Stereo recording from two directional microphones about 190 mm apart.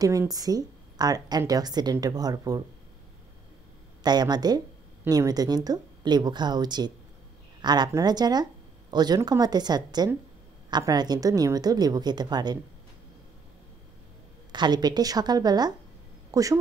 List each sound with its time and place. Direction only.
0.0 s a woman's voice: 20° right (ahead or behind)
4.0 s a woman's voice: 20° right (ahead or behind)
14.5 s a woman's voice: 20° right (ahead or behind)
16.3 s a sound: 20° right (ahead or behind)